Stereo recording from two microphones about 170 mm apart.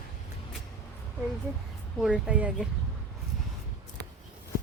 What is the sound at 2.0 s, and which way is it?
Speech, 5° right (ahead or behind).